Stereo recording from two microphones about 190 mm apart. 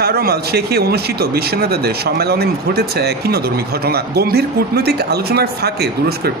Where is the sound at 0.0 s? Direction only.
55° right (ahead or behind).